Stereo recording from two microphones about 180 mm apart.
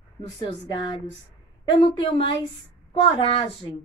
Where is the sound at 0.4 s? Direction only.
25° left (ahead or behind).